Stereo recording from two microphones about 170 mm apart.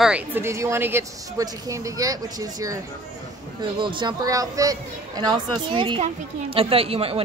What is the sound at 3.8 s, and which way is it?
Speech, 30° right (ahead or behind).